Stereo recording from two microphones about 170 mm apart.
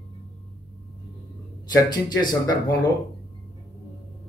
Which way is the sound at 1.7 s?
25° left (ahead or behind).